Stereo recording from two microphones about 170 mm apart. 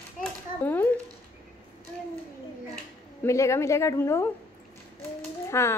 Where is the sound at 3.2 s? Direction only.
15° left (ahead or behind).